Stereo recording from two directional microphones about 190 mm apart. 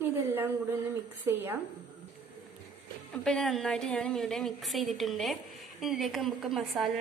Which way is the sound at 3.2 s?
5° left (ahead or behind).